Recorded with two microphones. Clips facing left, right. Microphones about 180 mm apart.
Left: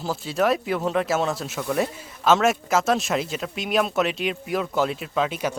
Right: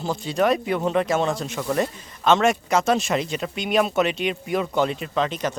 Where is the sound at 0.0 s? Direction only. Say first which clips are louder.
Right 1 dB; 5° left (ahead or behind).